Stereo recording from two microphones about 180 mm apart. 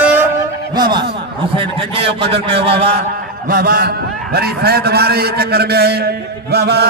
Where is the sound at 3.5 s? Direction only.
55° right (ahead or behind).